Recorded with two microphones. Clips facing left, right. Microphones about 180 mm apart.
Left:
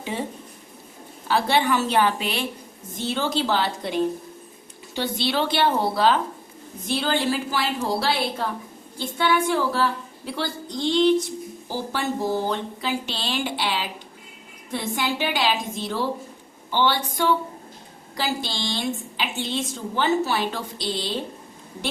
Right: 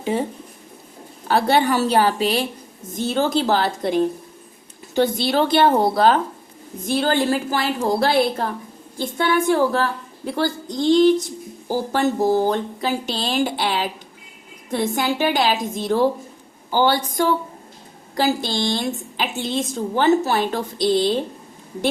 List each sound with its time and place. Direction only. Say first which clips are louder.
0.1 s a woman's voice: right 5 dB; 40° right (ahead or behind)
1.3 s a woman's voice: right 4 dB; 40° right (ahead or behind)